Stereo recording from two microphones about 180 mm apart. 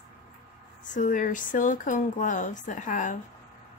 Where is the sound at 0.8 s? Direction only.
45° left (ahead or behind).